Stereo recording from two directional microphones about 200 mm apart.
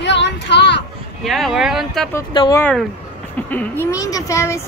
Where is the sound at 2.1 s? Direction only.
20° left (ahead or behind).